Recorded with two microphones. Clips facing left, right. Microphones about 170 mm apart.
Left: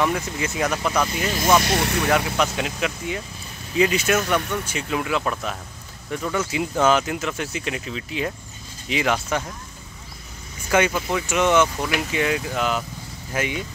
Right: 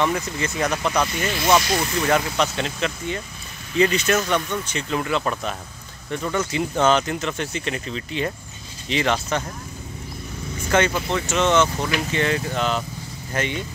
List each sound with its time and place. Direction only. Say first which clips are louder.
0.0 s speech: even; 5° left (ahead or behind)
1.6 s speech: left 1 dB; 70° left (ahead or behind)
2.0 s speech: right 2 dB; 5° left (ahead or behind)
10.7 s speech: even; 10° left (ahead or behind)